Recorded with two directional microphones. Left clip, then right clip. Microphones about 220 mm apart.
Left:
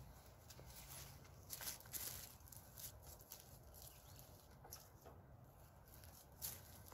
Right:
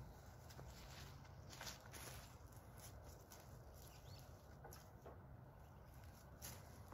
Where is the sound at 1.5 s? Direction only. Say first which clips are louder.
Left 2 dB; 35° left (ahead or behind).